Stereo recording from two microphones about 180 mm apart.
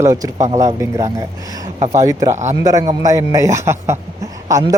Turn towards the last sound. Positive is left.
turn(degrees=-20)  # may be behind; listen again after turning